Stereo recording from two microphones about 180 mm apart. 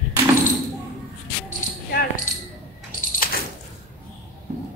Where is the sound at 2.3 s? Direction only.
50° left (ahead or behind).